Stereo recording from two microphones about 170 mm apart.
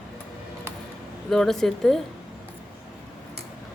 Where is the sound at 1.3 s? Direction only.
5° left (ahead or behind).